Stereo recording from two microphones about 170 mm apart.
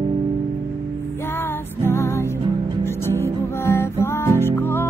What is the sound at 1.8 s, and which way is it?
Music, 15° left (ahead or behind).